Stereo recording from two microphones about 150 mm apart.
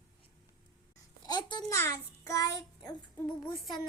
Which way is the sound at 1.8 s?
20° left (ahead or behind).